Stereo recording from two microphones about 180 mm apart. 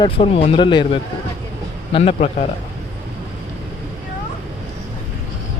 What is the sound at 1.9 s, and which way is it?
Speech, 35° left (ahead or behind).